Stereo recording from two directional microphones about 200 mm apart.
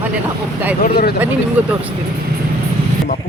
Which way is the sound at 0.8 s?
50° left (ahead or behind).